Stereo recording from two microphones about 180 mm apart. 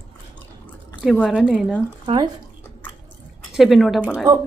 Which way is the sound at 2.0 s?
25° right (ahead or behind).